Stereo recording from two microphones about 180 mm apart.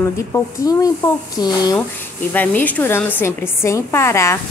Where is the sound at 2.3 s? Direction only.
10° left (ahead or behind).